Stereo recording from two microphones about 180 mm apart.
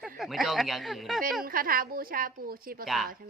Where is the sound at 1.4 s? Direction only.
50° right (ahead or behind).